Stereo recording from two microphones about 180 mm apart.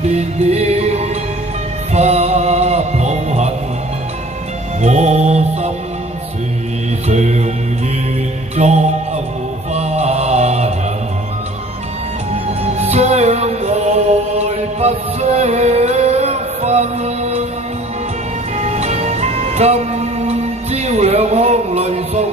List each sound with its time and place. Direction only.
0.1 s music: 35° right (ahead or behind)
4.8 s music: 40° right (ahead or behind)
7.1 s mantra: 40° right (ahead or behind)
8.5 s music: 40° right (ahead or behind)
9.8 s a sound: 35° right (ahead or behind)
12.9 s music: 35° right (ahead or behind)
18.6 s music: 35° right (ahead or behind)